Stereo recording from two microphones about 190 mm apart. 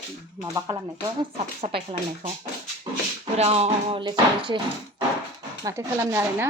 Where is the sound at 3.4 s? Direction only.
35° right (ahead or behind).